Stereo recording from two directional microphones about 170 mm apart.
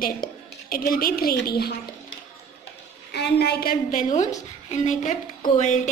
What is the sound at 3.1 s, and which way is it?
A woman's voice, 70° left (ahead or behind).